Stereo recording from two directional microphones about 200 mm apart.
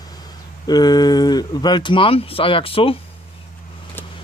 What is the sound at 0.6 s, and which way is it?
Speech, 20° left (ahead or behind).